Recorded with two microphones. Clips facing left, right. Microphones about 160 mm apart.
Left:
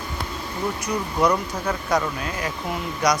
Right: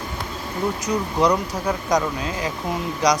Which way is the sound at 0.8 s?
15° right (ahead or behind).